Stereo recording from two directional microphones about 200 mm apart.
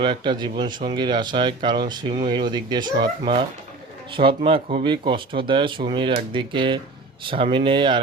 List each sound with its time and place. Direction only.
0.0 s speech: 25° right (ahead or behind)